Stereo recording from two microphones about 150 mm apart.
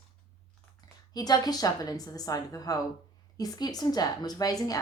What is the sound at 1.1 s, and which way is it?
Speech, 25° left (ahead or behind).